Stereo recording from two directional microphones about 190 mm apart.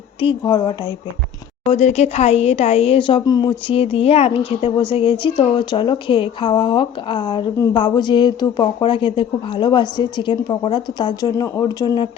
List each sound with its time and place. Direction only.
0.2 s speech: 25° left (ahead or behind)
1.6 s speech: 35° left (ahead or behind); by 12.0 s 20° left (ahead or behind)